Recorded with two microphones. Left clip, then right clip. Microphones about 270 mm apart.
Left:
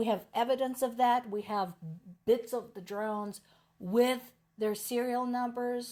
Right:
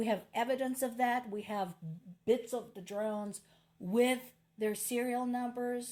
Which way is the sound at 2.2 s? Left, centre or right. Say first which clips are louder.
Left 3 dB; left.